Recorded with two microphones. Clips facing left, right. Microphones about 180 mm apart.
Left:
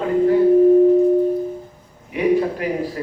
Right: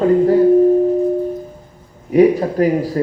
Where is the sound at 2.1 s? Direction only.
40° right (ahead or behind).